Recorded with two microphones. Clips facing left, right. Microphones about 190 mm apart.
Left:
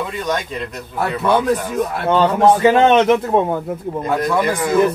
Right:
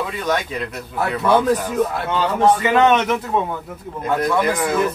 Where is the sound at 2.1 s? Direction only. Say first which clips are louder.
Left 3 dB; 30° left (ahead or behind).